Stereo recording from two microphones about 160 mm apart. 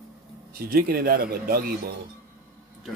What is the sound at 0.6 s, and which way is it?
Speech, 70° right (ahead or behind).